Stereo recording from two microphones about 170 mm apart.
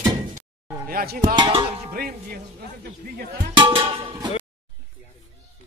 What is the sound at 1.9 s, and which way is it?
Speech, 55° right (ahead or behind).